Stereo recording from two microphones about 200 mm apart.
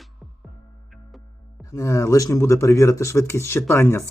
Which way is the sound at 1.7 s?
15° left (ahead or behind).